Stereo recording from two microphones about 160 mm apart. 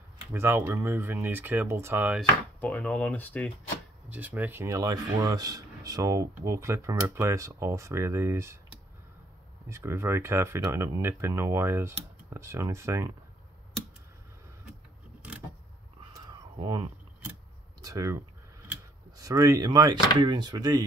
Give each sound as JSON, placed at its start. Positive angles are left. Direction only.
{"t": 0.3, "sound": "speech", "side_deg": -15}
{"t": 2.6, "sound": "speech", "side_deg": 10}
{"t": 4.1, "sound": "speech", "side_deg": -10}
{"t": 9.7, "sound": "speech", "side_deg": -15}
{"t": 16.0, "sound": "a sound", "side_deg": -30}
{"t": 17.8, "sound": "speech", "side_deg": -20}